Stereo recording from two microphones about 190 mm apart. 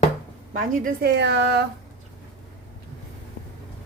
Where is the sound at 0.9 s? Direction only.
60° right (ahead or behind).